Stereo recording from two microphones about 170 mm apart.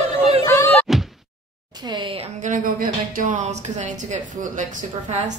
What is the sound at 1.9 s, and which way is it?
A woman's voice, 30° right (ahead or behind).